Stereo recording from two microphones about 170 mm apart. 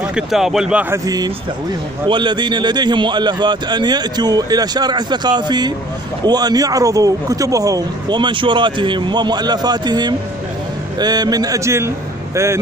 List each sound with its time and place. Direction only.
0.0 s speech: 5° right (ahead or behind)